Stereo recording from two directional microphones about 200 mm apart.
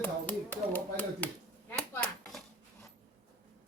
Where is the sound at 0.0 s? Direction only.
10° left (ahead or behind).